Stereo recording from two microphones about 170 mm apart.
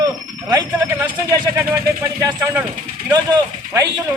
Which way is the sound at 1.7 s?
20° right (ahead or behind).